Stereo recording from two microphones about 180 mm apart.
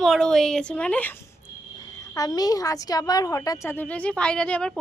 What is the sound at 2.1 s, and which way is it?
A woman's voice, 20° left (ahead or behind).